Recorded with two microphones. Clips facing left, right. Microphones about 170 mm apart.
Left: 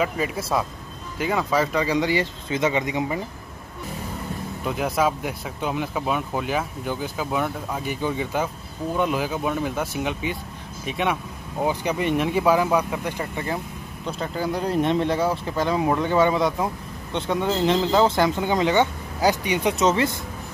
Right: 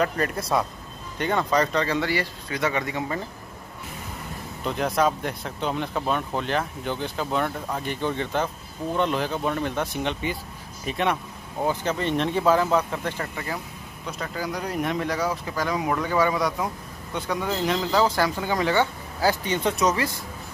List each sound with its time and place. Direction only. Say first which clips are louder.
0.0 s speech: even; 5° left (ahead or behind)
4.6 s speech: even; 5° left (ahead or behind)
11.6 s speech: left 2 dB; 15° left (ahead or behind)
14.0 s speech: left 4 dB; 30° left (ahead or behind)